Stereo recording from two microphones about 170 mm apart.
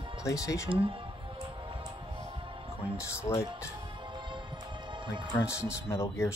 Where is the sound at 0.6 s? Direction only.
30° right (ahead or behind).